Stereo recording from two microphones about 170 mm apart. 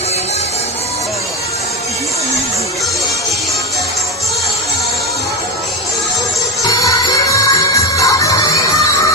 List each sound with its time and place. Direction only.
6.7 s music: 20° left (ahead or behind)